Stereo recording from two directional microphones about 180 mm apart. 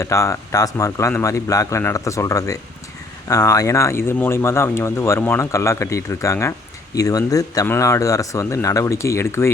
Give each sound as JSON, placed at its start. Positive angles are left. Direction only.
{"t": 0.0, "sound": "speech", "side_deg": 15}